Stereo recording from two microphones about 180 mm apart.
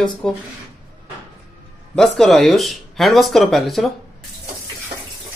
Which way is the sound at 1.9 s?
5° left (ahead or behind).